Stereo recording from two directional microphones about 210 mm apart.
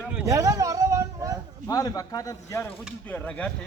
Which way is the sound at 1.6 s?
20° left (ahead or behind).